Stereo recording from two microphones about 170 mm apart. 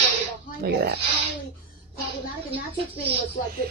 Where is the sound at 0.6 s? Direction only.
65° right (ahead or behind).